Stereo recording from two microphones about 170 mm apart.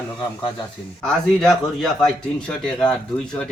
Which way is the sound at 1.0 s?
5° left (ahead or behind).